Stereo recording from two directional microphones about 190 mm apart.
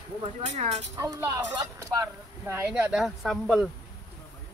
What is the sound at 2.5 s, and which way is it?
Speech, 10° right (ahead or behind).